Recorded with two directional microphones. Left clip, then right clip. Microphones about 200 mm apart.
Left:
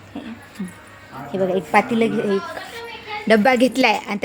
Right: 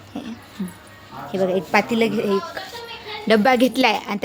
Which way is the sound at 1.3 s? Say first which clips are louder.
Even; centre (ahead or behind).